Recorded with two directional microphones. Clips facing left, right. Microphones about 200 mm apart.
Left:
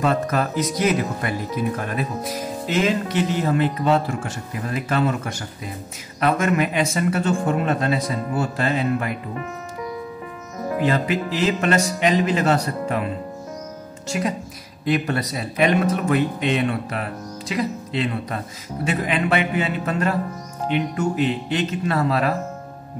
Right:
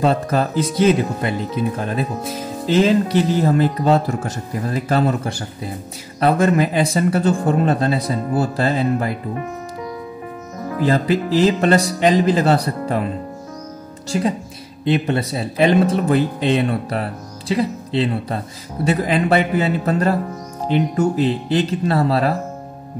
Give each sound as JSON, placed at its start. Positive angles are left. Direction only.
{"t": 0.0, "sound": "speech", "side_deg": -30}
{"t": 10.8, "sound": "speech", "side_deg": -35}
{"t": 14.0, "sound": "speech", "side_deg": -30}